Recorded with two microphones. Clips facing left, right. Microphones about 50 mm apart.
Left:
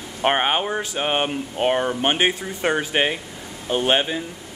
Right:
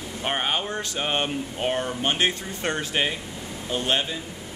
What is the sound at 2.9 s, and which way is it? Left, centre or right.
Speech, left.